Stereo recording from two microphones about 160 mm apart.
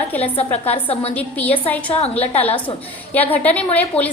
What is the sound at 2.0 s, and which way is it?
Speech, 40° left (ahead or behind).